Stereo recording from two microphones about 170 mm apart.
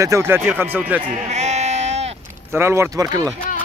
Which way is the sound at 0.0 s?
15° right (ahead or behind).